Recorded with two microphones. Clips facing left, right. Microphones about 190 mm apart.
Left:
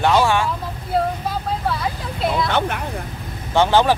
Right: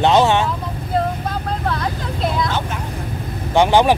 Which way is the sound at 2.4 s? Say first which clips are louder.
Left 2 dB; 65° left (ahead or behind).